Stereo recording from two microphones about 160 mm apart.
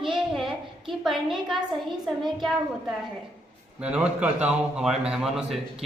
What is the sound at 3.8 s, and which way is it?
A man's voice, 5° right (ahead or behind).